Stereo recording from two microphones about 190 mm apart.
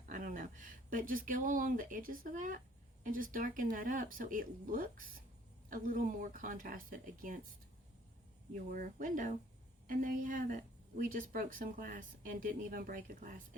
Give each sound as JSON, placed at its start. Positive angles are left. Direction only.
{"t": 0.1, "sound": "speech", "side_deg": -45}
{"t": 8.7, "sound": "speech", "side_deg": -45}